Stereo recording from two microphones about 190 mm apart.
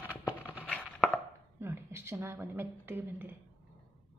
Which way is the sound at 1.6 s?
15° right (ahead or behind).